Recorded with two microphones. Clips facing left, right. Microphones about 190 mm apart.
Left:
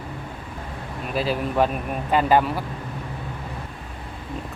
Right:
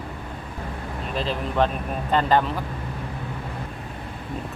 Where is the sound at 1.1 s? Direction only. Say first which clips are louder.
Left 3 dB; 10° left (ahead or behind).